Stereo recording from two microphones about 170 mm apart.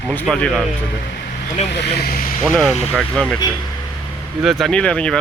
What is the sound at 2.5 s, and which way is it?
Speech, 5° left (ahead or behind).